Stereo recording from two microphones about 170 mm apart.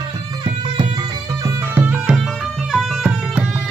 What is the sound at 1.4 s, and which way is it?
Music, 10° right (ahead or behind).